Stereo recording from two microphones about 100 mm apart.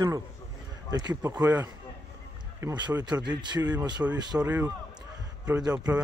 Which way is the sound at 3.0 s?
45° right (ahead or behind).